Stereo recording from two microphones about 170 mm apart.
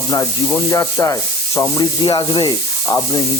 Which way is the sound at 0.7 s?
20° left (ahead or behind).